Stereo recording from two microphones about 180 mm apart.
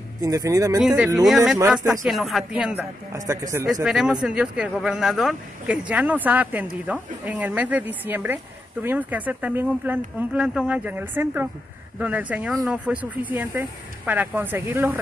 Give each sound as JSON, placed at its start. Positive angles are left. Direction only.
{"t": 0.2, "sound": "speech", "side_deg": -20}
{"t": 0.7, "sound": "speech", "side_deg": -5}
{"t": 3.8, "sound": "speech", "side_deg": -5}